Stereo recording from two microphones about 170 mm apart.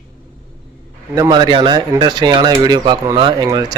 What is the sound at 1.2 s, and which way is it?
A man's voice, 25° right (ahead or behind).